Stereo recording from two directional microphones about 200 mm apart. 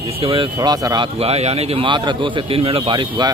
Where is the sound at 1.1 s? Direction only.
30° right (ahead or behind).